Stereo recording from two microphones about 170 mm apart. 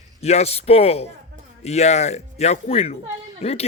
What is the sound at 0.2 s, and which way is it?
Speech, 40° left (ahead or behind).